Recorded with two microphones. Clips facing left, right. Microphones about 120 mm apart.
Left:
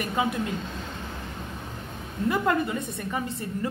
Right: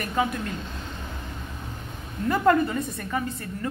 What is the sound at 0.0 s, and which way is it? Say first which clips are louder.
Speech: right 1 dB; 15° left (ahead or behind).